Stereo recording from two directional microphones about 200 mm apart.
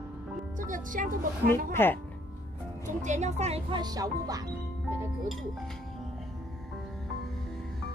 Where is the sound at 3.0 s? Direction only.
35° right (ahead or behind); by 4.4 s 20° right (ahead or behind).